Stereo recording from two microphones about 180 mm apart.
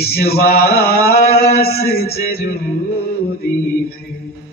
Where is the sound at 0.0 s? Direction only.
60° left (ahead or behind).